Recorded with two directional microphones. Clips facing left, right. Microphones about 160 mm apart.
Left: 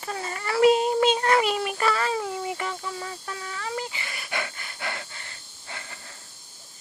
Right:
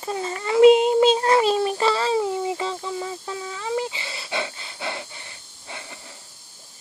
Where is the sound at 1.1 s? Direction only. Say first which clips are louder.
Right 4 dB; 30° right (ahead or behind).